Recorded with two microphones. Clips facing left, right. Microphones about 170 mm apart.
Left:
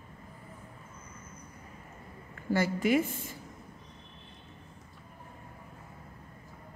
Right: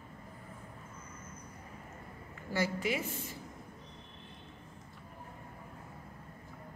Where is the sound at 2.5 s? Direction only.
50° left (ahead or behind).